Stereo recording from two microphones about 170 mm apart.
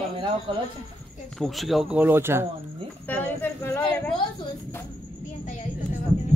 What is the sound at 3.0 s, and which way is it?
Speech, 10° left (ahead or behind).